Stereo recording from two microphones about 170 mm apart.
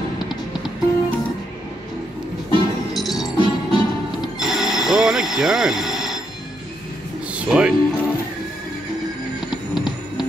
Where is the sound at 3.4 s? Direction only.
30° right (ahead or behind).